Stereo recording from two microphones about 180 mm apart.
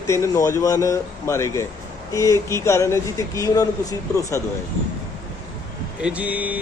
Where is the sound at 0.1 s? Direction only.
15° left (ahead or behind).